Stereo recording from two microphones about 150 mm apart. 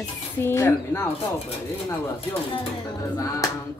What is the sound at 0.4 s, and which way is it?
Speech, 15° left (ahead or behind).